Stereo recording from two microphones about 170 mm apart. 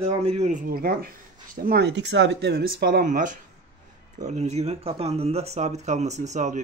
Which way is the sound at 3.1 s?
50° right (ahead or behind).